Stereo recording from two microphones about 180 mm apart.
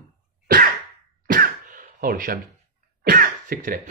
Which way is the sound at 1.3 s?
50° right (ahead or behind).